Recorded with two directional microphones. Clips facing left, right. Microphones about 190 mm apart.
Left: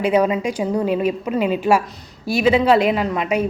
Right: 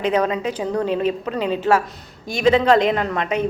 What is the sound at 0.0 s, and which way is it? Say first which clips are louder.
A woman's voice: left 3 dB; 10° left (ahead or behind).